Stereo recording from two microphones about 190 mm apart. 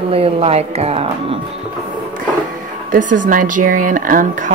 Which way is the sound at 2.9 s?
45° right (ahead or behind).